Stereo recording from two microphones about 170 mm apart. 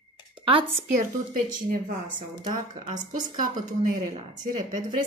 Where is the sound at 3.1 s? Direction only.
50° right (ahead or behind).